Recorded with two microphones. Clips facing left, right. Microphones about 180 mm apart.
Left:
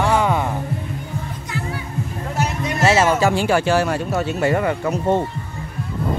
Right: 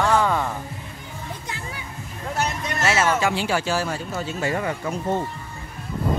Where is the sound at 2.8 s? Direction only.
30° left (ahead or behind); by 5.2 s 65° left (ahead or behind).